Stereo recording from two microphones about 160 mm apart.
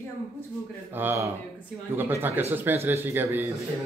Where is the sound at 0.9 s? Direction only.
15° right (ahead or behind).